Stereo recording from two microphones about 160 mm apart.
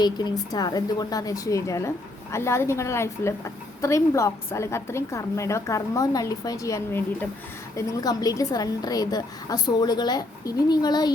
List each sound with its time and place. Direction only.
0.0 s a woman's voice: 25° left (ahead or behind)